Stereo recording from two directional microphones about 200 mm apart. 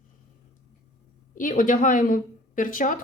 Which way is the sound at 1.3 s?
40° left (ahead or behind).